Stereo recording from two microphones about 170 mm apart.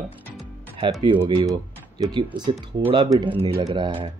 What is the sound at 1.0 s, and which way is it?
Speech, 30° right (ahead or behind).